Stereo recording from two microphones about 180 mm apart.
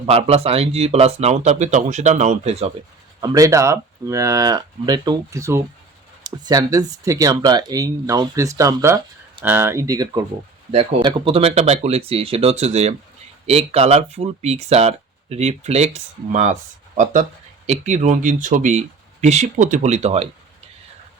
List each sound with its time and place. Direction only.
0.0 s speech: 35° right (ahead or behind)
3.2 s speech: 20° right (ahead or behind)
10.7 s speech: 30° right (ahead or behind)